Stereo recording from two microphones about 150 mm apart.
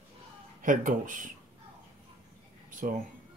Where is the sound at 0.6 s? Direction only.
60° right (ahead or behind).